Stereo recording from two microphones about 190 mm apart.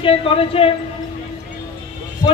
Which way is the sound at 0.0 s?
30° left (ahead or behind).